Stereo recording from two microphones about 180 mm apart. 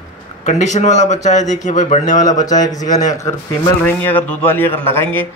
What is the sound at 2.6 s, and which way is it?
A man's voice, 20° left (ahead or behind).